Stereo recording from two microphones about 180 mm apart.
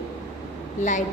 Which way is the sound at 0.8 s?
40° left (ahead or behind).